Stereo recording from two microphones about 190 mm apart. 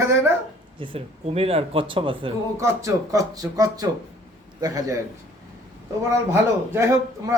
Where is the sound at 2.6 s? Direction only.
15° right (ahead or behind).